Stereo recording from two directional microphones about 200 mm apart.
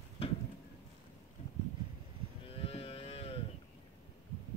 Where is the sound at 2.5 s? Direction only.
30° left (ahead or behind).